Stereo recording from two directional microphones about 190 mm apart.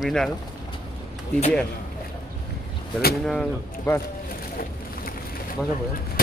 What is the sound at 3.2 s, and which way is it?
Speech, 5° left (ahead or behind).